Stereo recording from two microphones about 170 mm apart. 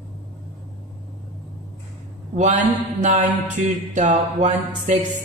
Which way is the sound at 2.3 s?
45° right (ahead or behind).